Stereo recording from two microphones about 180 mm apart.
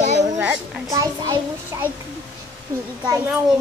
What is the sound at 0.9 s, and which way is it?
Speech, 20° right (ahead or behind).